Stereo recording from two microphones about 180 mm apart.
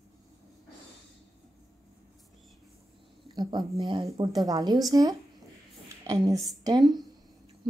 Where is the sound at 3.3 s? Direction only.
25° right (ahead or behind).